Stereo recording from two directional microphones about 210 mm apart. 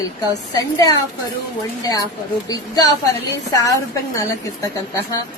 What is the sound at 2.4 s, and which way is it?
Speech, 15° left (ahead or behind).